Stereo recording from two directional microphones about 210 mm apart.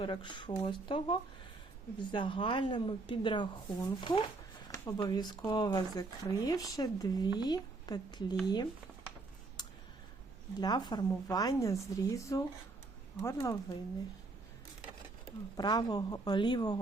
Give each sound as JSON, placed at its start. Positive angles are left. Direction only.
{"t": 0.0, "sound": "speech", "side_deg": 20}
{"t": 9.6, "sound": "a sound", "side_deg": 20}
{"t": 10.6, "sound": "speech", "side_deg": 20}
{"t": 15.5, "sound": "speech", "side_deg": 20}